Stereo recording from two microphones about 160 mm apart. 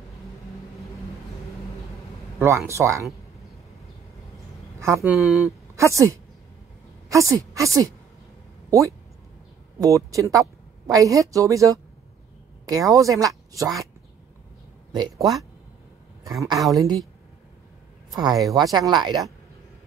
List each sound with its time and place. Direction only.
2.4 s speech: 15° right (ahead or behind)
4.7 s speech: 20° right (ahead or behind); by 5.5 s centre (ahead or behind)
5.8 s a woman's voice: 20° right (ahead or behind)
8.6 s a sound: 20° right (ahead or behind)
9.8 s speech: 20° right (ahead or behind)
14.9 s speech: 25° right (ahead or behind)
16.3 s speech: 20° right (ahead or behind)
18.1 s speech: 25° right (ahead or behind)